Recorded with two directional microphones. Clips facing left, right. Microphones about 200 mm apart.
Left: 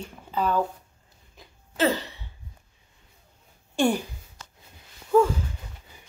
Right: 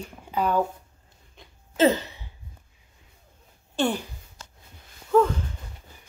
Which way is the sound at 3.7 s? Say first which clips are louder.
Left 2 dB; 10° left (ahead or behind).